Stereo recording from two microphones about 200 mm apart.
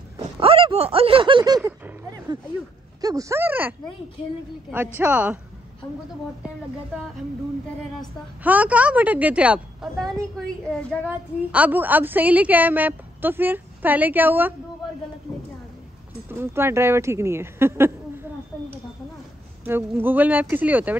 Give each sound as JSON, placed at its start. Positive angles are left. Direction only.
{"t": 0.4, "sound": "a sound", "side_deg": -30}
{"t": 3.0, "sound": "speech", "side_deg": -15}
{"t": 4.9, "sound": "a woman's voice", "side_deg": -5}
{"t": 8.5, "sound": "a woman's voice", "side_deg": -5}
{"t": 11.1, "sound": "a woman's voice", "side_deg": -10}
{"t": 16.3, "sound": "a woman's voice", "side_deg": -10}
{"t": 19.6, "sound": "a woman's voice", "side_deg": -10}